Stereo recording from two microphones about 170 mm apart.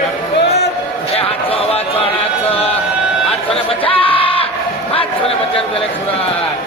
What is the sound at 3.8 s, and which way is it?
Crowd, 30° left (ahead or behind).